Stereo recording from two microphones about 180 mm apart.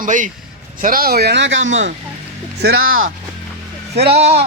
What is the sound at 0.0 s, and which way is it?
Speech, 45° right (ahead or behind).